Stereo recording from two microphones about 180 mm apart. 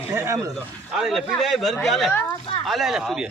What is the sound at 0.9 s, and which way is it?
A man's voice, centre (ahead or behind).